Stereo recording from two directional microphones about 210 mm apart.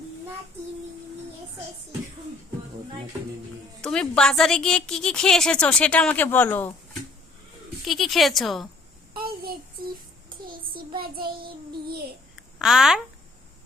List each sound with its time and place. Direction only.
3.8 s speech: 5° left (ahead or behind)
7.9 s speech: centre (ahead or behind)
10.2 s child singing: 45° right (ahead or behind)
12.4 s a sound: centre (ahead or behind)